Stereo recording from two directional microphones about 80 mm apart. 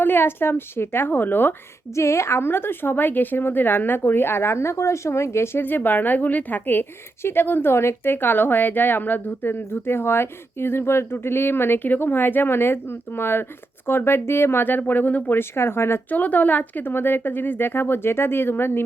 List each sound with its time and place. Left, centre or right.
0.0 s a woman's voice: left
2.0 s a woman's voice: left